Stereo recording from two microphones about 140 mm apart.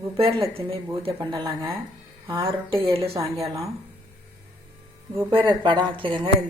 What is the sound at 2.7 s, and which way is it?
Speech, 20° right (ahead or behind).